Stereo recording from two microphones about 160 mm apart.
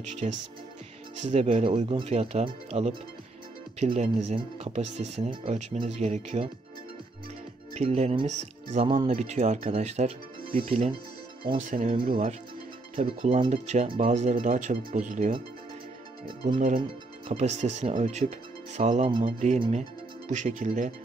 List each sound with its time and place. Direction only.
0.2 s speech: 40° right (ahead or behind)
7.7 s speech: 45° right (ahead or behind)
11.6 s speech: 55° right (ahead or behind)
12.9 s speech: 40° right (ahead or behind)
16.5 s speech: 60° right (ahead or behind)
17.3 s speech: 45° right (ahead or behind)